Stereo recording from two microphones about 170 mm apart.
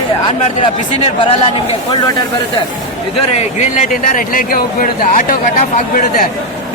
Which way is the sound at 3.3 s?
45° left (ahead or behind).